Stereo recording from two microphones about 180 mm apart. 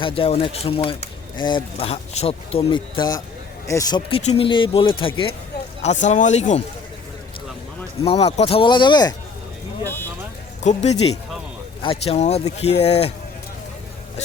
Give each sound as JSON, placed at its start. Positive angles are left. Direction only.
{"t": 0.0, "sound": "speech", "side_deg": 30}
{"t": 5.8, "sound": "speech", "side_deg": 40}
{"t": 8.0, "sound": "speech", "side_deg": 35}
{"t": 10.6, "sound": "speech", "side_deg": 40}
{"t": 11.8, "sound": "speech", "side_deg": 30}